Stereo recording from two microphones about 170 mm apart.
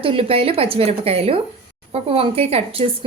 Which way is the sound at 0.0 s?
35° right (ahead or behind).